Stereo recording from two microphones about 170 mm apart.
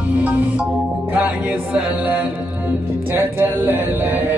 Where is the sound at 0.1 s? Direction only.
10° right (ahead or behind).